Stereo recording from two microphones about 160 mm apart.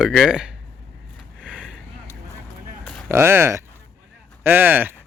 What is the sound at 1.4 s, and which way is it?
Vehicle, 5° right (ahead or behind).